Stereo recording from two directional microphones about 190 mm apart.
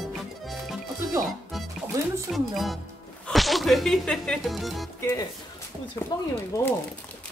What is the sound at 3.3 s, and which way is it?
Speech, centre (ahead or behind).